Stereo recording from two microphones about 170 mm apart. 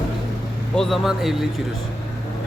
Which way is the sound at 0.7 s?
Centre (ahead or behind).